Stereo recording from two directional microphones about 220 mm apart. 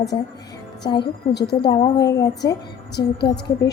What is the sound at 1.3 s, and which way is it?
Speech, 50° left (ahead or behind).